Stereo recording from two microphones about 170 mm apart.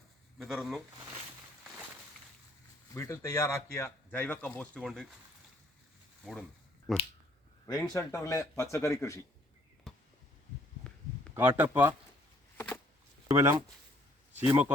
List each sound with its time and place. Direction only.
0.3 s speech: centre (ahead or behind)
2.9 s speech: 20° left (ahead or behind)
6.9 s finger snapping: centre (ahead or behind)
7.7 s speech: 20° left (ahead or behind)
9.9 s a sound: centre (ahead or behind)
11.3 s speech: 10° right (ahead or behind)
12.5 s a sound: 10° left (ahead or behind)
13.3 s speech: 15° right (ahead or behind)